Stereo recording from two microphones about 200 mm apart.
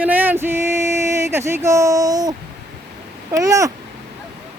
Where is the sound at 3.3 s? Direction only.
15° right (ahead or behind).